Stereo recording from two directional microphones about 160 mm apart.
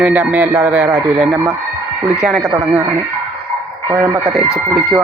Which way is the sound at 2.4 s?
15° right (ahead or behind).